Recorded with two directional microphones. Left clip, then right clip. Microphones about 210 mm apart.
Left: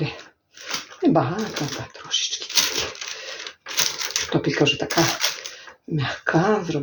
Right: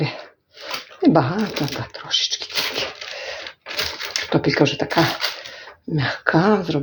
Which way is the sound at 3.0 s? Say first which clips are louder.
Even; 5° left (ahead or behind).